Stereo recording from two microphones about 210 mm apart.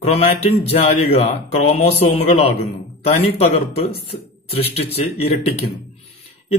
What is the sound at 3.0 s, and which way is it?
Speech, 30° left (ahead or behind).